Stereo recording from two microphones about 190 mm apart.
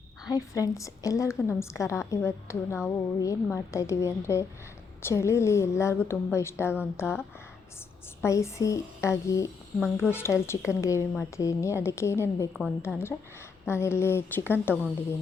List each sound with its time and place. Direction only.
0.3 s a woman's voice: 20° left (ahead or behind)